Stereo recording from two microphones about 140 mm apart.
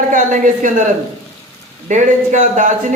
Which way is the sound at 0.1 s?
65° right (ahead or behind).